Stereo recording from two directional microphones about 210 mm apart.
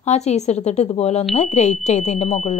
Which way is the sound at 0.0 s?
30° left (ahead or behind).